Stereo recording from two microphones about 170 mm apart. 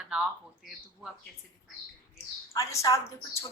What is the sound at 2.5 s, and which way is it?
Speech, 20° left (ahead or behind).